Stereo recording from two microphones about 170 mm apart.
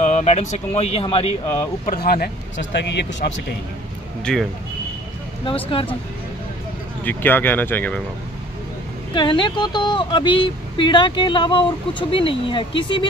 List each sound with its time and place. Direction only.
0.0 s speech: 40° left (ahead or behind)
1.9 s speech: 60° left (ahead or behind); by 3.4 s 90° left
4.2 s speech: 5° left (ahead or behind)
5.7 s speech: 30° left (ahead or behind)
7.1 s speech: 10° left (ahead or behind)
9.1 s speech: 25° left (ahead or behind)